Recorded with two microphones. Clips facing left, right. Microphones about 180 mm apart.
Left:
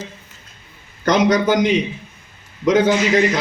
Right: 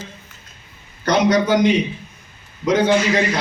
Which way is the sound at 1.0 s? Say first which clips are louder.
Left 1 dB; 45° left (ahead or behind).